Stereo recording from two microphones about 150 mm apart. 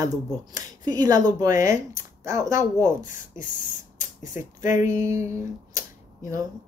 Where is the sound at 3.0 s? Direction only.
60° left (ahead or behind).